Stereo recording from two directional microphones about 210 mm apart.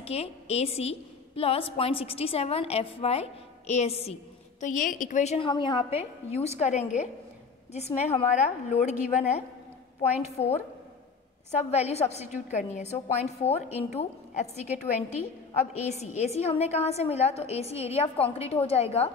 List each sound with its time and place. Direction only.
0.0 s a woman's voice: 30° left (ahead or behind)
11.5 s a woman's voice: 30° left (ahead or behind)